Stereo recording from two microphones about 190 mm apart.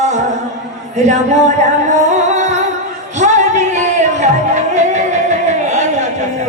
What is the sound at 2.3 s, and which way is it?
Music, 40° right (ahead or behind).